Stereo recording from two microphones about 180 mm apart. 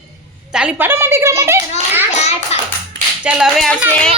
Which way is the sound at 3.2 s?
5° right (ahead or behind).